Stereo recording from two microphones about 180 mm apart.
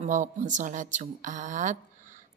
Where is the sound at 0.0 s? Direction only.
40° right (ahead or behind).